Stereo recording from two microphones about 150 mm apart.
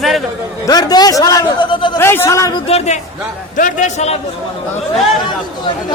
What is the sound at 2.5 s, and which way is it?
Speech, 40° left (ahead or behind).